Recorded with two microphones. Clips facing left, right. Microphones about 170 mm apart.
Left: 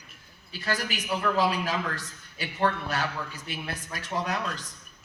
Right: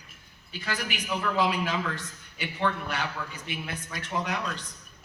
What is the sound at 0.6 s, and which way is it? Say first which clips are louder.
A man's voice: left 2 dB; 40° left (ahead or behind).